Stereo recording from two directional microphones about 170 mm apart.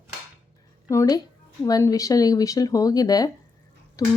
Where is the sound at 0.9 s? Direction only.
20° left (ahead or behind).